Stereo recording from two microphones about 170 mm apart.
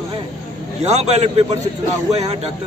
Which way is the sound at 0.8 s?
40° right (ahead or behind).